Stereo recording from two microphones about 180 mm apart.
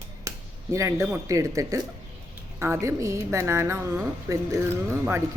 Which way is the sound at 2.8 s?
15° right (ahead or behind).